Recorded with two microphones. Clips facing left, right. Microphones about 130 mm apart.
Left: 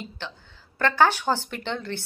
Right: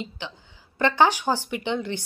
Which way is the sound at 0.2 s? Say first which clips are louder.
Right 1 dB; 15° right (ahead or behind).